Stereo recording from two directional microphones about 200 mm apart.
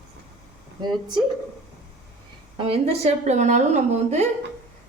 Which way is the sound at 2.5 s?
30° right (ahead or behind).